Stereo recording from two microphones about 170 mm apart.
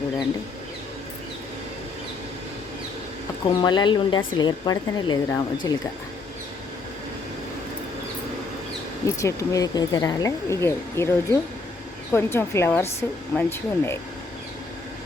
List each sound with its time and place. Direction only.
3.4 s speech: 25° left (ahead or behind)
9.0 s speech: 20° left (ahead or behind)